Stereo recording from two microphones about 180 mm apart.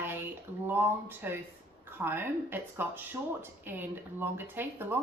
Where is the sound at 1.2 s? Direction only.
10° right (ahead or behind).